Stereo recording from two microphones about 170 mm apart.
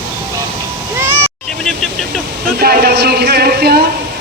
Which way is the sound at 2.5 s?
65° right (ahead or behind).